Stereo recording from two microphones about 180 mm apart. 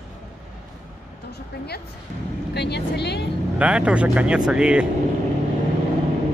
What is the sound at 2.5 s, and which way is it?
Speech, 70° left (ahead or behind).